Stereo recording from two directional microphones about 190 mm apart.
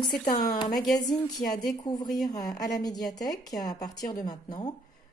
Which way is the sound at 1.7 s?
20° left (ahead or behind).